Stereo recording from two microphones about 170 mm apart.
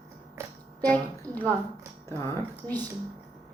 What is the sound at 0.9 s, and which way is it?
A woman's voice, 10° left (ahead or behind).